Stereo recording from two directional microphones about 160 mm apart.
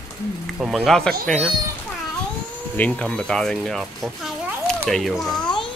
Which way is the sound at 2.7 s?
10° left (ahead or behind).